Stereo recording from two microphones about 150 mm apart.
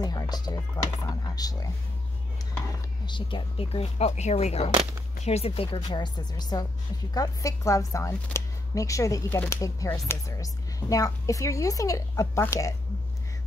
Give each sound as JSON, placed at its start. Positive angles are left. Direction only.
{"t": 0.0, "sound": "speech", "side_deg": 25}
{"t": 3.1, "sound": "speech", "side_deg": 35}
{"t": 5.9, "sound": "speech", "side_deg": 30}